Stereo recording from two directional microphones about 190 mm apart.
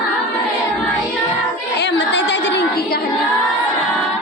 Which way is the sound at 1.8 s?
65° left (ahead or behind).